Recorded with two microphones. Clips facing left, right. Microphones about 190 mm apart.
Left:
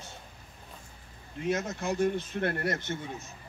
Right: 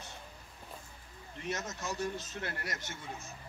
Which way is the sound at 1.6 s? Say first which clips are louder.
Left 9 dB; 55° left (ahead or behind).